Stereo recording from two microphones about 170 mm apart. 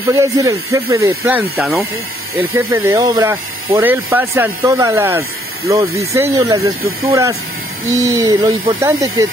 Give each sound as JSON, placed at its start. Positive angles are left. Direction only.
{"t": 0.1, "sound": "speech", "side_deg": -20}
{"t": 3.8, "sound": "speech", "side_deg": -10}